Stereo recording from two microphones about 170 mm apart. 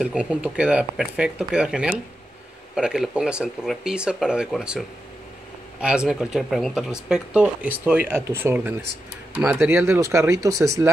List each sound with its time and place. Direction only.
0.0 s speech: 5° right (ahead or behind)